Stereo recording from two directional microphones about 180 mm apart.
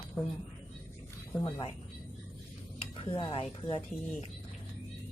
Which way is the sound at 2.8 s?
30° left (ahead or behind).